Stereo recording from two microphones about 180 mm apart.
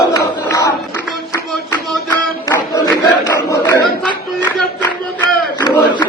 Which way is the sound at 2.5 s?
15° left (ahead or behind).